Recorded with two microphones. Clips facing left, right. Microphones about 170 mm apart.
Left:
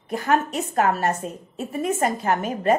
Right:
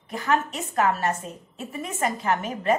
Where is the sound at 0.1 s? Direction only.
45° left (ahead or behind).